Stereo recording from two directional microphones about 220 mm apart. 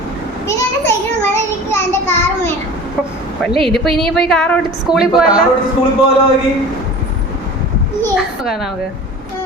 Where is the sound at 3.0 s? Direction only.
Centre (ahead or behind).